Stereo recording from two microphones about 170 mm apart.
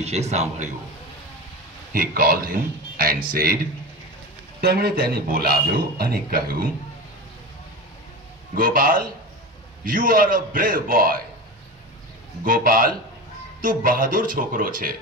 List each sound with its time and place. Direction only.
0.0 s a man's voice: 40° right (ahead or behind)
1.9 s a man's voice: 60° right (ahead or behind)
4.6 s a man's voice: 65° right (ahead or behind)
8.5 s a man's voice: 55° right (ahead or behind)
12.4 s a man's voice: 55° right (ahead or behind)